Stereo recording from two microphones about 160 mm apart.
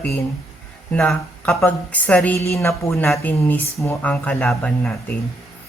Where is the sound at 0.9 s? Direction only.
5° left (ahead or behind).